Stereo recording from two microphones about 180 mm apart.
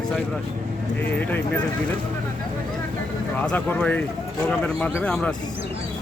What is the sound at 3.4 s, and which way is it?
Speech, 5° left (ahead or behind).